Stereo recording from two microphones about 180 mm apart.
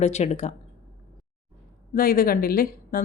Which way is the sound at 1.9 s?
55° left (ahead or behind).